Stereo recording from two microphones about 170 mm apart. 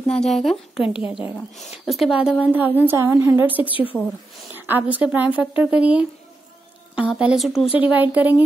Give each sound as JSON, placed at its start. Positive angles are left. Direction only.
{"t": 0.1, "sound": "a woman's voice", "side_deg": 0}
{"t": 7.1, "sound": "speech", "side_deg": -5}
{"t": 7.6, "sound": "speech", "side_deg": 30}
{"t": 7.9, "sound": "a woman's voice", "side_deg": -10}